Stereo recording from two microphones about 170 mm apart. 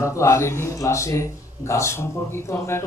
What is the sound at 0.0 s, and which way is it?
Speech, 15° left (ahead or behind).